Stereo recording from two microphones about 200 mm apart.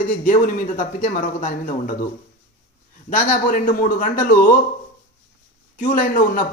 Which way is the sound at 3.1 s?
40° left (ahead or behind).